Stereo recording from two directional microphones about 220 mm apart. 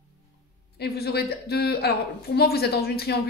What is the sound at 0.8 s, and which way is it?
A woman's voice, 45° left (ahead or behind).